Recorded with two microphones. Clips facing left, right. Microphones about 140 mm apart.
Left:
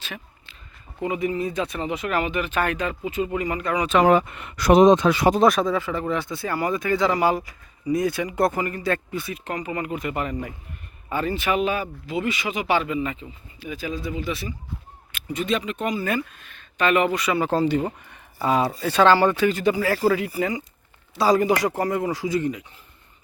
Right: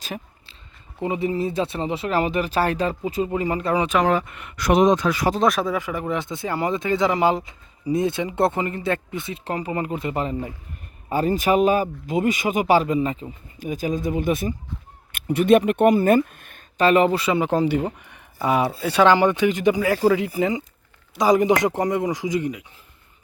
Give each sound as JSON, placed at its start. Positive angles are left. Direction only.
{"t": 0.0, "sound": "a sound", "side_deg": -40}
{"t": 1.0, "sound": "speech", "side_deg": -30}
{"t": 4.2, "sound": "speech", "side_deg": 30}
{"t": 5.4, "sound": "speech", "side_deg": 0}
{"t": 5.7, "sound": "speech", "side_deg": -15}
{"t": 11.1, "sound": "speech", "side_deg": -40}
{"t": 16.7, "sound": "speech", "side_deg": -35}
{"t": 17.4, "sound": "speech", "side_deg": -15}